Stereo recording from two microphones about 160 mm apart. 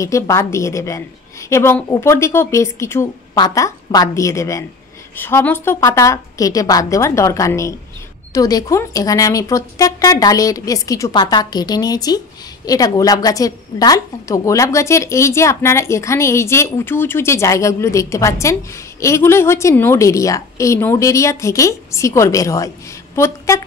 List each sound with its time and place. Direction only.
0.0 s a woman's voice: 20° left (ahead or behind)